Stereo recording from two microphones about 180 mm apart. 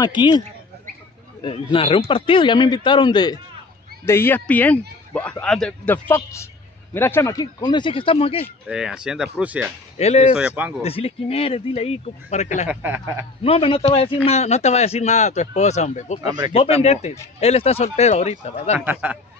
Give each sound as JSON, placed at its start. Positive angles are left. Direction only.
{"t": 0.0, "sound": "speech", "side_deg": 25}
{"t": 1.4, "sound": "speech", "side_deg": 30}
{"t": 4.0, "sound": "a man's voice", "side_deg": 15}
{"t": 8.6, "sound": "speech", "side_deg": -5}
{"t": 9.9, "sound": "a man's voice", "side_deg": 35}
{"t": 10.3, "sound": "speech", "side_deg": -5}
{"t": 10.8, "sound": "a man's voice", "side_deg": 35}
{"t": 12.6, "sound": "speech", "side_deg": -10}
{"t": 13.4, "sound": "a man's voice", "side_deg": 30}
{"t": 16.2, "sound": "speech", "side_deg": -20}
{"t": 16.5, "sound": "a man's voice", "side_deg": 35}
{"t": 18.9, "sound": "speech", "side_deg": -10}